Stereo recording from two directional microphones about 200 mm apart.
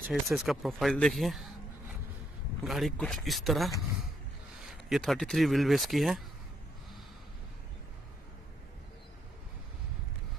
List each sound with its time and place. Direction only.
0.1 s speech: centre (ahead or behind)
2.6 s speech: centre (ahead or behind)